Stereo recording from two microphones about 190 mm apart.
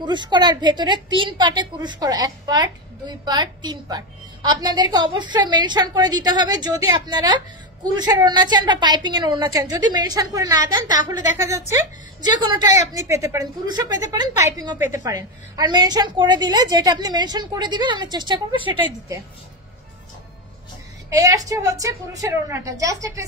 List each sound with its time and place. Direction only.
0.0 s a woman's voice: 25° right (ahead or behind)
21.1 s a woman's voice: 15° right (ahead or behind)